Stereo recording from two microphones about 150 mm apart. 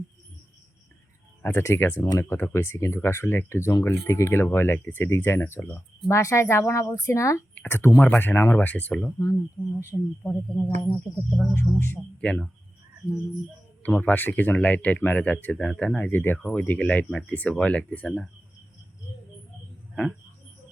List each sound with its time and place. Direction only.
1.4 s speech: 15° left (ahead or behind)
9.1 s speech: 20° left (ahead or behind)
13.8 s speech: 10° left (ahead or behind)